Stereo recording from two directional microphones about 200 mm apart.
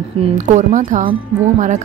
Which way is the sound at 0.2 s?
35° right (ahead or behind).